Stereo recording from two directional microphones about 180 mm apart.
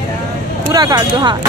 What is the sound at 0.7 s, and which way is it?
Speech, 20° right (ahead or behind).